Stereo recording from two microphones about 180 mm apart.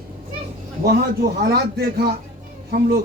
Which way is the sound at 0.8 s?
60° right (ahead or behind).